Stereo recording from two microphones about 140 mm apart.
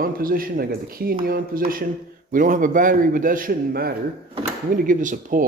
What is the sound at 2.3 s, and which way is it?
A man's voice, 70° right (ahead or behind).